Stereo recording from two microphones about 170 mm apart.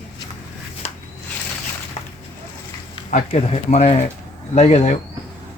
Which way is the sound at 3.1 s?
45° left (ahead or behind).